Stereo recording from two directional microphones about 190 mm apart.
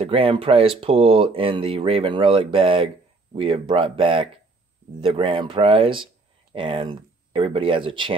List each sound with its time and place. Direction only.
0.0 s speech: 30° right (ahead or behind)